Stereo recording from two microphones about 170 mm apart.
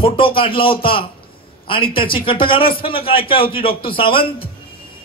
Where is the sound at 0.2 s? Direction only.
30° left (ahead or behind).